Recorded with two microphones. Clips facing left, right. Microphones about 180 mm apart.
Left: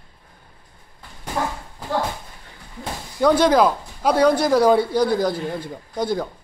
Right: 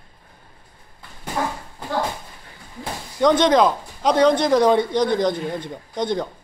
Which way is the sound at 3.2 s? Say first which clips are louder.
Even; 5° left (ahead or behind).